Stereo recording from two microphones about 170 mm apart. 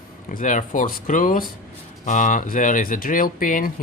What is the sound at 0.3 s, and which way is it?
Speech, 50° left (ahead or behind).